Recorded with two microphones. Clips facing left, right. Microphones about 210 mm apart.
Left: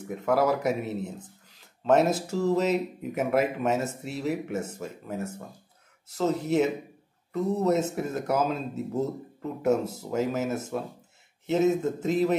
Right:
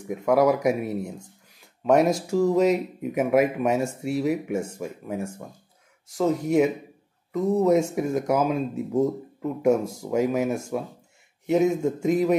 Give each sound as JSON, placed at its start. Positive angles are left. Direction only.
{"t": 0.1, "sound": "speech", "side_deg": -10}